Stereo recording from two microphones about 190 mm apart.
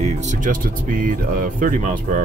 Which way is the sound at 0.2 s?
40° right (ahead or behind).